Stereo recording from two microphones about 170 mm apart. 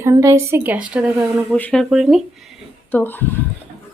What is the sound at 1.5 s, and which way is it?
Speech, 5° left (ahead or behind).